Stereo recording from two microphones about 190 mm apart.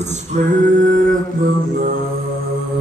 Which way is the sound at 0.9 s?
45° right (ahead or behind).